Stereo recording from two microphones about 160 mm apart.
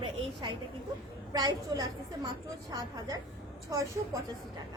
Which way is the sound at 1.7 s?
25° right (ahead or behind).